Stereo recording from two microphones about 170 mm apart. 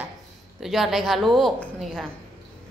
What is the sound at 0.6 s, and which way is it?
A woman's voice, centre (ahead or behind).